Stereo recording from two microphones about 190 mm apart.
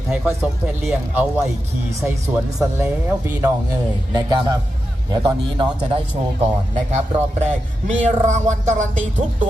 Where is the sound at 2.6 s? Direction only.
10° right (ahead or behind).